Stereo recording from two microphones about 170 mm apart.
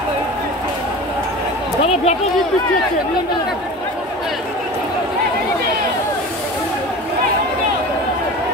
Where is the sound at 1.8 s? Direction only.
40° left (ahead or behind).